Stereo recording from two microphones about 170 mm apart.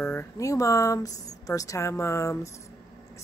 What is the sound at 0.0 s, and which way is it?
Speech, 15° left (ahead or behind).